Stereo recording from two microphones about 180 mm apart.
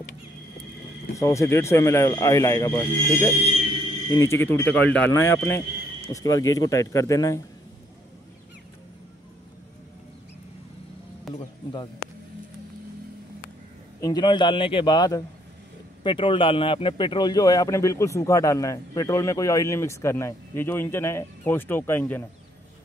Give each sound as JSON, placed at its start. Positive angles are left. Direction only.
{"t": 1.1, "sound": "speech", "side_deg": 15}
{"t": 11.3, "sound": "music", "side_deg": 25}
{"t": 14.0, "sound": "a man's voice", "side_deg": 25}